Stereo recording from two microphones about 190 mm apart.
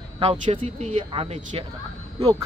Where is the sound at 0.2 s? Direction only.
30° right (ahead or behind).